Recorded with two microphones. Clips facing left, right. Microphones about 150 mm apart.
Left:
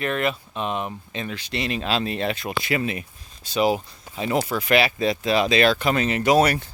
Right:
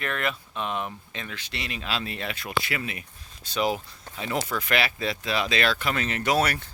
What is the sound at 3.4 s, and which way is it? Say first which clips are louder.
Speech: left 5 dB; 10° left (ahead or behind).